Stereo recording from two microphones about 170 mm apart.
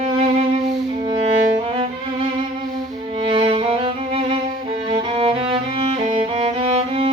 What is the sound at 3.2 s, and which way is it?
Music, 30° right (ahead or behind).